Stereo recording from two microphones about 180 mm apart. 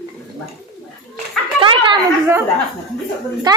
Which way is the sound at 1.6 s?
30° right (ahead or behind).